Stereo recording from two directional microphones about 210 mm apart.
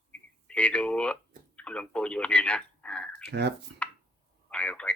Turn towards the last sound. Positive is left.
turn(degrees=5)  # may be behind; listen again after turning